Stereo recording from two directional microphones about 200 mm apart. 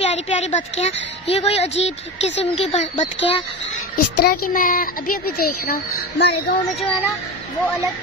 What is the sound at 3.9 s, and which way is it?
A child's voice, 50° left (ahead or behind).